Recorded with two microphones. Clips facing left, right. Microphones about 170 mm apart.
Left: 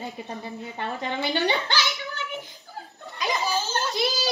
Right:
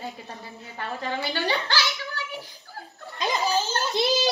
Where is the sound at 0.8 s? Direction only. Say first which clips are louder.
Even; 20° left (ahead or behind).